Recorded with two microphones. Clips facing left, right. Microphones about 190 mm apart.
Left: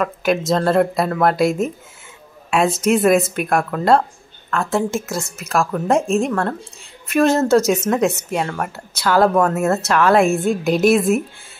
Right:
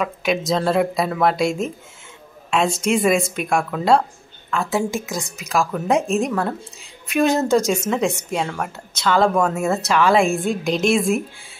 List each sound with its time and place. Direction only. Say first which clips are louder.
0.0 s speech: left 3 dB; centre (ahead or behind)
2.8 s speech: left 5 dB; 5° left (ahead or behind)